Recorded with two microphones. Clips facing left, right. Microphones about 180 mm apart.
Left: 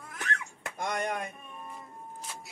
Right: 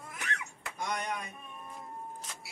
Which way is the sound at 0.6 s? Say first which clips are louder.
Left 4 dB; 50° left (ahead or behind).